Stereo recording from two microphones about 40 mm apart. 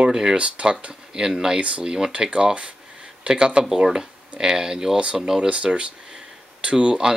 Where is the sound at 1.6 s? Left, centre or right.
Right.